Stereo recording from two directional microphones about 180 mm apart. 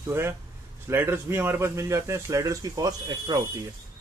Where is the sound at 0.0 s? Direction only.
15° right (ahead or behind).